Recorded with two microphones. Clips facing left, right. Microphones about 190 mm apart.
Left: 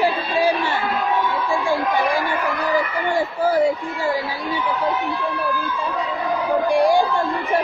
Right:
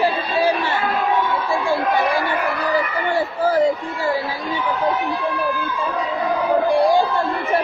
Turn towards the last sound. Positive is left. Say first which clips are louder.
# right 1 dB
turn(degrees=15)  # may be behind; listen again after turning